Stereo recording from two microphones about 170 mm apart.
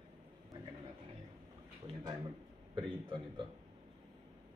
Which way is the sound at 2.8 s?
30° right (ahead or behind).